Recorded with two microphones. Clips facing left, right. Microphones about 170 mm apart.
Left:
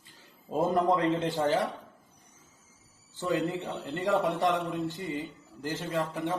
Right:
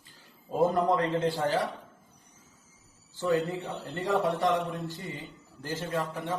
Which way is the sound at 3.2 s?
20° left (ahead or behind).